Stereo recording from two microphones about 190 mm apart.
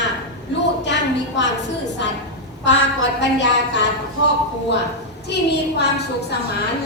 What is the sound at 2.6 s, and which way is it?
Speech, 70° left (ahead or behind).